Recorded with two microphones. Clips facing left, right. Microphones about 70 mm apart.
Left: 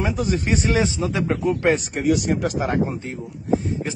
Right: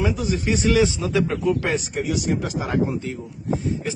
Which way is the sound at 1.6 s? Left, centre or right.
Left.